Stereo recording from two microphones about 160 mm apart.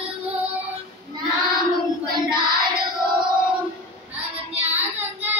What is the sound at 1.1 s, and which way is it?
Child singing, 30° right (ahead or behind).